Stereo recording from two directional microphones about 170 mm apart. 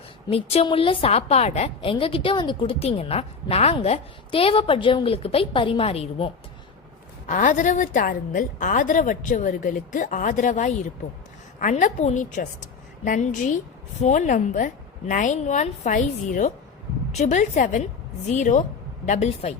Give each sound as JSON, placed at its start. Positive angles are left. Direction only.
{"t": 0.3, "sound": "a woman's voice", "side_deg": 35}
{"t": 7.3, "sound": "a woman's voice", "side_deg": 50}